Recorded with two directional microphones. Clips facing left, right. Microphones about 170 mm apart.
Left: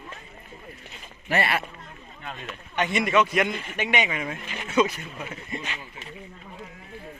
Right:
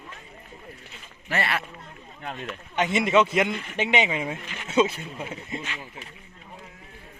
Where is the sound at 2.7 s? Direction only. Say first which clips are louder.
Right 2 dB; 20° right (ahead or behind).